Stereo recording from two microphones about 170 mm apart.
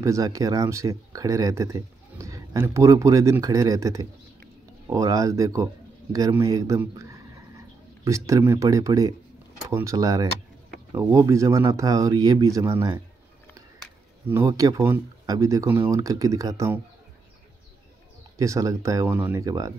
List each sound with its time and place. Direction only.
0.0 s a man's voice: 20° right (ahead or behind)
14.2 s speech: 15° right (ahead or behind)
18.4 s speech: 20° right (ahead or behind)